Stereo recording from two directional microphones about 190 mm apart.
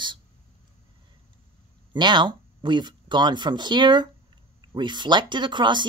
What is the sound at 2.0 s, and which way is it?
Speech, 25° right (ahead or behind).